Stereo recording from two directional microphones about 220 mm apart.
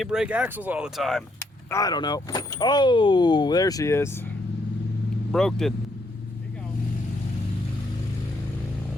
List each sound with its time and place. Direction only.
0.0 s speech: 5° right (ahead or behind)
1.7 s speech: 15° left (ahead or behind)
5.3 s speech: centre (ahead or behind)